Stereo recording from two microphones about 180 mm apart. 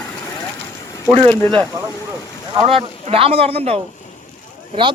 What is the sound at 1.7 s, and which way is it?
Speech, 20° right (ahead or behind).